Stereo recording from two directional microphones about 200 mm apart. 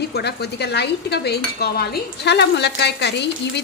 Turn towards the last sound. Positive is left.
turn(degrees=60)  # may be behind; listen again after turning